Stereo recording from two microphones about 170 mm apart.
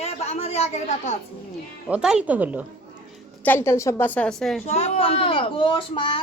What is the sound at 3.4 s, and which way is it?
A woman's voice, 15° left (ahead or behind).